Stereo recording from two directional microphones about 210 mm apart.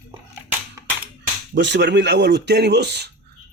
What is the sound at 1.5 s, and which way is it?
A man's voice, 55° right (ahead or behind).